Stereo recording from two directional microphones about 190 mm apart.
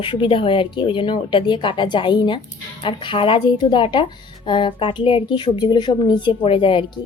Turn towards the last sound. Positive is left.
turn(degrees=30)  # may be behind; listen again after turning